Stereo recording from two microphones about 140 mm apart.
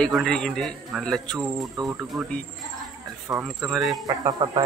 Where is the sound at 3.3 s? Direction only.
Centre (ahead or behind).